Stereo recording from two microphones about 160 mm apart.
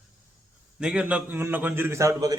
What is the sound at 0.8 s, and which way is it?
Speech, 5° right (ahead or behind).